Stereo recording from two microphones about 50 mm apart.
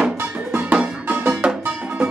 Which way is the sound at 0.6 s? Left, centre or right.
Right.